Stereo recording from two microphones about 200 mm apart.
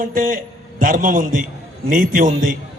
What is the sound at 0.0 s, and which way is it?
A man's voice, 45° right (ahead or behind).